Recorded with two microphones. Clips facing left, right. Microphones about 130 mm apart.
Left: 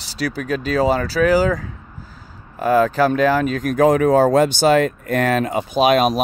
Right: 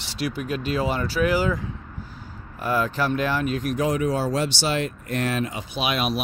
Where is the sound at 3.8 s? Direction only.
50° left (ahead or behind).